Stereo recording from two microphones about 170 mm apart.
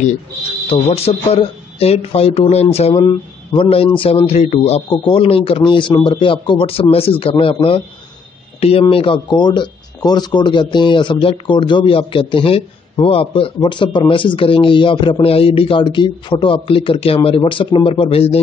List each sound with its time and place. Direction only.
0.7 s speech: 40° left (ahead or behind)